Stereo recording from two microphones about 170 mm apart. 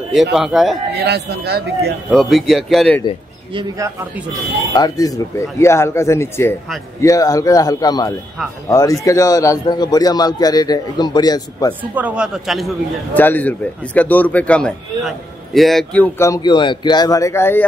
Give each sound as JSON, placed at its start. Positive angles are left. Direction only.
{"t": 0.3, "sound": "a man's voice", "side_deg": 0}
{"t": 0.9, "sound": "speech", "side_deg": -75}
{"t": 2.0, "sound": "a man's voice", "side_deg": 0}
{"t": 3.5, "sound": "speech", "side_deg": -20}
{"t": 4.7, "sound": "a man's voice", "side_deg": 20}
{"t": 11.9, "sound": "a man's voice", "side_deg": -5}
{"t": 13.1, "sound": "speech", "side_deg": 10}